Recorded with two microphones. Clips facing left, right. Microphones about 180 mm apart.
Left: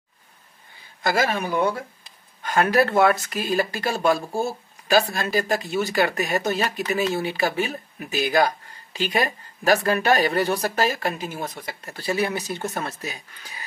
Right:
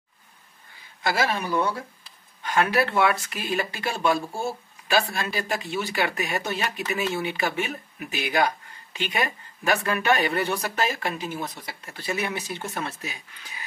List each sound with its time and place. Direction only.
1.0 s a man's voice: 45° left (ahead or behind)